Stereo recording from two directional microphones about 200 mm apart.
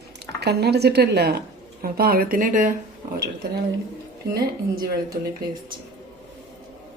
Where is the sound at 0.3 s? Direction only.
55° right (ahead or behind).